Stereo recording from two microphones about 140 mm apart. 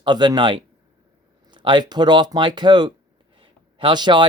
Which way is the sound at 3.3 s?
35° right (ahead or behind).